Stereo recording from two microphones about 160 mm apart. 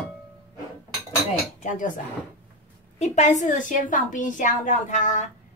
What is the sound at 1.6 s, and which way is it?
A woman's voice, 55° left (ahead or behind).